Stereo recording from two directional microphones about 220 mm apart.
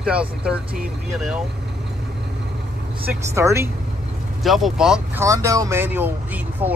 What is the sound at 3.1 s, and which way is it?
Speech, 10° right (ahead or behind).